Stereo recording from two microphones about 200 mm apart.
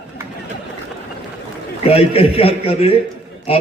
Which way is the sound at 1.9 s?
30° left (ahead or behind).